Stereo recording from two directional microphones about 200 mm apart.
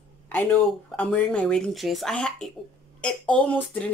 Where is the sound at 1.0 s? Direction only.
5° left (ahead or behind).